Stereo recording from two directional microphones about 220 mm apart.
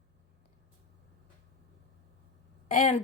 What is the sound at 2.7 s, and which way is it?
Speech, 35° left (ahead or behind).